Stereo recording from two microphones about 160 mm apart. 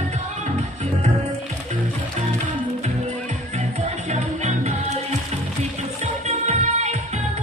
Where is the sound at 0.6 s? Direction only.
45° right (ahead or behind).